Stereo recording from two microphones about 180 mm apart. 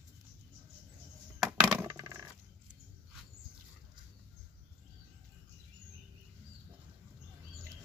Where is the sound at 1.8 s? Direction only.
20° right (ahead or behind).